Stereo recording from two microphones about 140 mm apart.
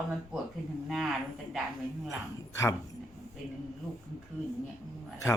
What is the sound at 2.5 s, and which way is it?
Speech, 20° left (ahead or behind).